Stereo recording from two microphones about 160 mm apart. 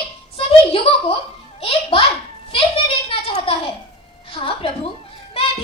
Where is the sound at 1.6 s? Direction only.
35° left (ahead or behind).